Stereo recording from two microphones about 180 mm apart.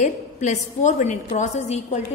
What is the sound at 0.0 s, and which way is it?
A woman's voice, 40° left (ahead or behind).